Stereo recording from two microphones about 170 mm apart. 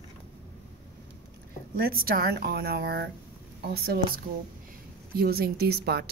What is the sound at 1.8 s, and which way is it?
A woman's voice, 60° right (ahead or behind).